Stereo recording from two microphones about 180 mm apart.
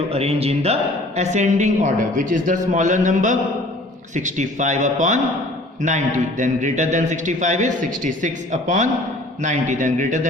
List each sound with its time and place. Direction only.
0.1 s a man's voice: 35° right (ahead or behind)
6.4 s a man's voice: 45° right (ahead or behind)